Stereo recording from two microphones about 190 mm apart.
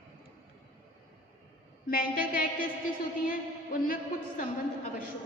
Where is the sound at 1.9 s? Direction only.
50° left (ahead or behind).